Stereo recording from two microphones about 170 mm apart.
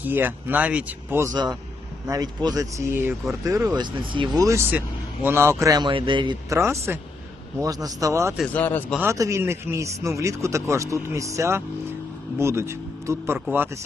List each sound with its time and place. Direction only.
0.0 s a man's voice: 10° right (ahead or behind)
1.3 s a man's voice: 25° right (ahead or behind)
8.5 s speech: 10° left (ahead or behind)
9.0 s a man's voice: 15° right (ahead or behind)